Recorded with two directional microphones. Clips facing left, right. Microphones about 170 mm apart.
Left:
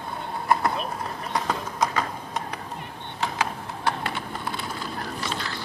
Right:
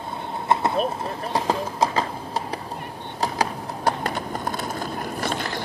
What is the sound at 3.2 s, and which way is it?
Clip-clop, 40° right (ahead or behind).